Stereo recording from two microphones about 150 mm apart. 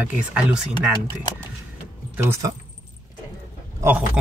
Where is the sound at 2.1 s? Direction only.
15° right (ahead or behind).